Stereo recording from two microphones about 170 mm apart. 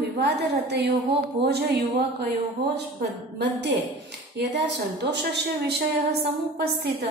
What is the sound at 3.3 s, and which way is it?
A woman's voice, 90° right.